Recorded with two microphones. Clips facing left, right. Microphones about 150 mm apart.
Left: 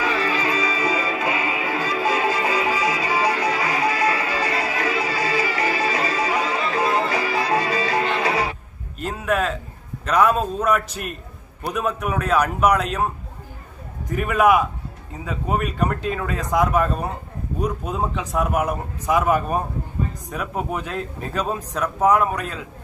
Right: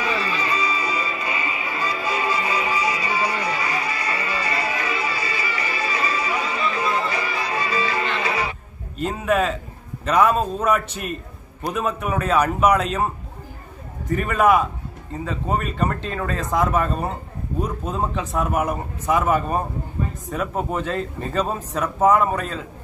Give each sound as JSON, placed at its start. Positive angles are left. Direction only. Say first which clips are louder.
{"t": 0.0, "sound": "music", "louder": "left 2 dB", "side_deg": 90}
{"t": 7.4, "sound": "music", "louder": "left 3 dB", "side_deg": 75}
{"t": 9.0, "sound": "speech", "louder": "right 2 dB", "side_deg": 0}
{"t": 14.1, "sound": "speech", "louder": "even", "side_deg": 5}